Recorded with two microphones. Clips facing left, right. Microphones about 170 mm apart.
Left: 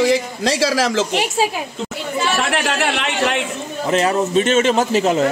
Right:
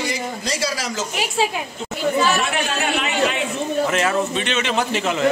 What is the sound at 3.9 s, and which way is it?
Speech, 35° left (ahead or behind).